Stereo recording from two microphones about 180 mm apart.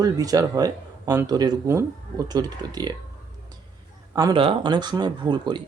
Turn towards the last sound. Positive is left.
turn(degrees=-25)  # may be behind; listen again after turning